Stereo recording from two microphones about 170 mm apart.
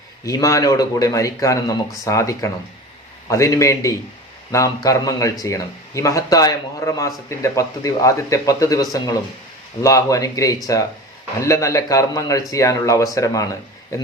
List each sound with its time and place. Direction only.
0.3 s a man's voice: 20° left (ahead or behind)